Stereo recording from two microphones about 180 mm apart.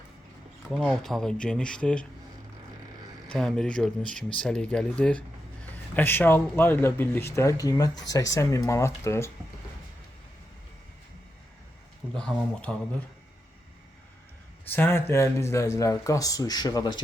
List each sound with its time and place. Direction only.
0.7 s speech: 5° left (ahead or behind)
3.2 s speech: 5° left (ahead or behind)
12.1 s speech: 5° left (ahead or behind)
14.7 s speech: 10° left (ahead or behind)